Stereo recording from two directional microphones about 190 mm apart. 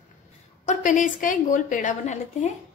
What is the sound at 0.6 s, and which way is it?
A woman's voice, 40° left (ahead or behind).